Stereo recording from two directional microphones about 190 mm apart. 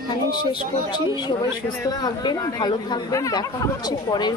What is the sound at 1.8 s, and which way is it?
Speech, 20° left (ahead or behind).